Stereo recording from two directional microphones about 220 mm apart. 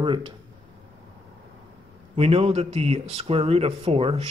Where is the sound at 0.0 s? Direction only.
20° right (ahead or behind).